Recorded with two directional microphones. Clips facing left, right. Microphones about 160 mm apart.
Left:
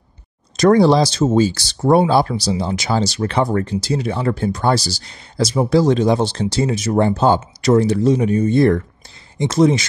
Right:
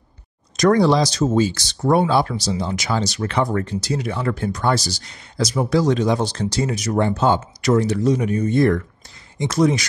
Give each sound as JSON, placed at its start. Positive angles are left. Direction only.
{"t": 0.6, "sound": "speech", "side_deg": 30}